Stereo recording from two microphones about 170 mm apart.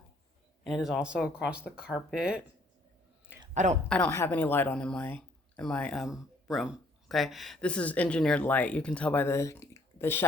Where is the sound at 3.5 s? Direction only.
45° right (ahead or behind).